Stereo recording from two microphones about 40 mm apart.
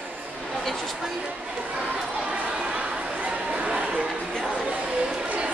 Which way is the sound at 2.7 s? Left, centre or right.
Right.